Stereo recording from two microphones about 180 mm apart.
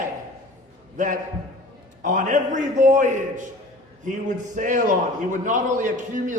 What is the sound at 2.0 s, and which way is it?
A man's voice, 45° right (ahead or behind).